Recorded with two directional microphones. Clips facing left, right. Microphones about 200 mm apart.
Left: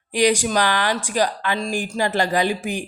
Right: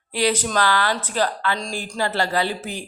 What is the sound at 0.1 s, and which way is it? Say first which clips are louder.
Speech: left 3 dB; 15° left (ahead or behind).